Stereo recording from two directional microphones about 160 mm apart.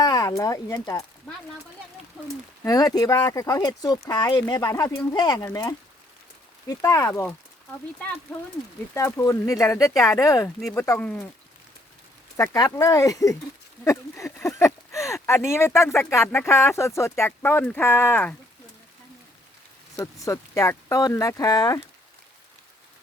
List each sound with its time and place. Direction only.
0.0 s speech: 20° left (ahead or behind)
2.6 s speech: 25° left (ahead or behind)
9.0 s speech: 20° left (ahead or behind)
10.6 s speech: 5° left (ahead or behind)
12.4 s speech: 20° left (ahead or behind)
20.0 s speech: 20° left (ahead or behind)